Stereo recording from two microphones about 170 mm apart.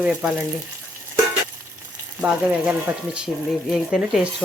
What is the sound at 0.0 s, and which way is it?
Speech, 5° right (ahead or behind).